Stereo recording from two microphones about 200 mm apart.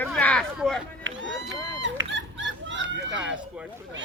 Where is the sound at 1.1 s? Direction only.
70° right (ahead or behind).